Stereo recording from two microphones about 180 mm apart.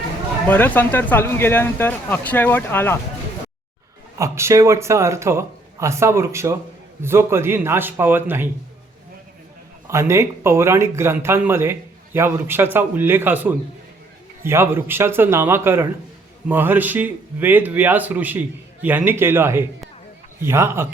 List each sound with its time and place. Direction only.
0.4 s speech: 10° left (ahead or behind)
4.2 s speech: 15° right (ahead or behind)
9.8 s speech: 15° right (ahead or behind)